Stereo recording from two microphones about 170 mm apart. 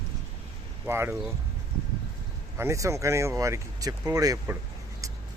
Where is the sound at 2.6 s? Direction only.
15° right (ahead or behind).